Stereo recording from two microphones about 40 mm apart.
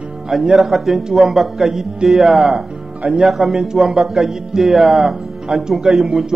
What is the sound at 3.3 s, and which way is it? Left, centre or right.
Music, centre.